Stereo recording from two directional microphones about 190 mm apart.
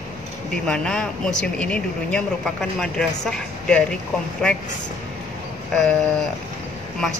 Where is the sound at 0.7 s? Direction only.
5° left (ahead or behind).